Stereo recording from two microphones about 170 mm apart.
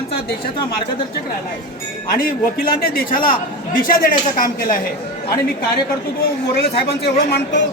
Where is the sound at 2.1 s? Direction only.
60° left (ahead or behind).